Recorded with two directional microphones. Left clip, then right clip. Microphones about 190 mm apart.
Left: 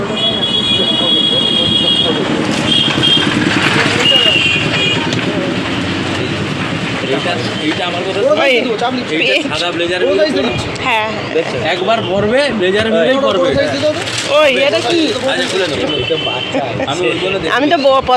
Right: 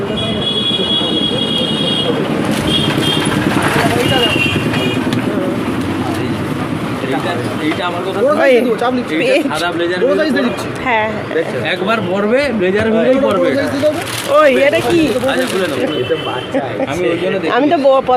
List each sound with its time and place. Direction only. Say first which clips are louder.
8.4 s a sound: right 4 dB; 30° right (ahead or behind)
14.3 s speech: right 1 dB; 30° right (ahead or behind)
17.5 s speech: even; 15° right (ahead or behind)